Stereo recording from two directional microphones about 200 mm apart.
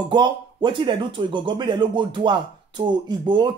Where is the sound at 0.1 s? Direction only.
25° right (ahead or behind).